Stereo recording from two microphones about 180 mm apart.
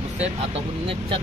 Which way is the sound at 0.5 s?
30° right (ahead or behind).